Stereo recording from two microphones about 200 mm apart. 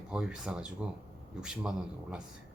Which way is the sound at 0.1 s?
5° right (ahead or behind).